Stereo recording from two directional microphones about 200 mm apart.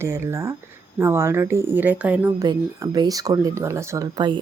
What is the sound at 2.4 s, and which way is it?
Speech, 20° right (ahead or behind).